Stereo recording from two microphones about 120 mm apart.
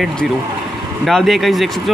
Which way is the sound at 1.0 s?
Centre (ahead or behind).